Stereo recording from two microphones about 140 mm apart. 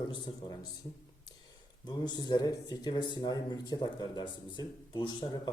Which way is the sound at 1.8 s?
30° left (ahead or behind).